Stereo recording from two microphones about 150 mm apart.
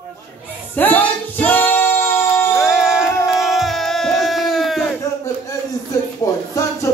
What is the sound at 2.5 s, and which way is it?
Music, 5° right (ahead or behind).